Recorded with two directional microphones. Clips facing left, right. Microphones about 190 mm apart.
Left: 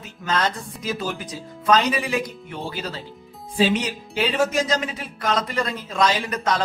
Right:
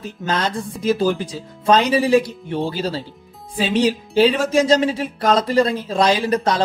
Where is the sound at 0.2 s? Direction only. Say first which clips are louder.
Right 2 dB; 25° right (ahead or behind).